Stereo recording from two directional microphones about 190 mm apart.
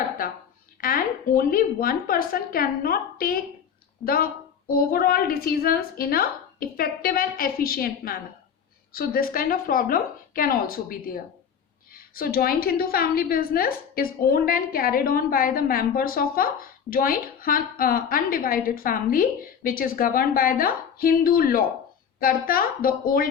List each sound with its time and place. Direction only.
0.8 s a woman's voice: 50° left (ahead or behind)